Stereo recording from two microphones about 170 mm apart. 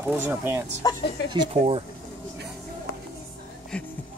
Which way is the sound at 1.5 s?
35° right (ahead or behind).